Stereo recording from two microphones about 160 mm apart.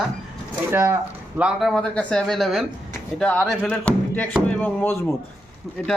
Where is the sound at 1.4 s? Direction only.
5° right (ahead or behind).